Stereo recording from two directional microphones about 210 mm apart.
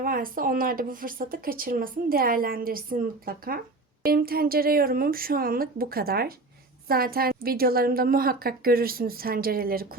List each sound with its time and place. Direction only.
0.0 s speech: 40° right (ahead or behind)